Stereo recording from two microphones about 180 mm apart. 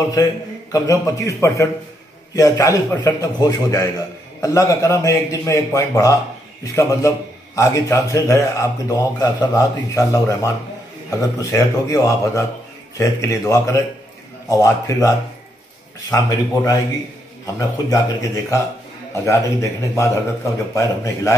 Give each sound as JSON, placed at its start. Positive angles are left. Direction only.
{"t": 0.1, "sound": "a man's voice", "side_deg": 20}